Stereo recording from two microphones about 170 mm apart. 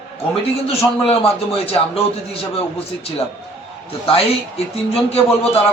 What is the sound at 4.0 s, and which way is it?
Speech, 35° left (ahead or behind).